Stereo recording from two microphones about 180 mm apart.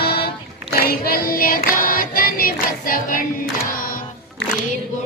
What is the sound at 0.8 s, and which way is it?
Child singing, 55° left (ahead or behind).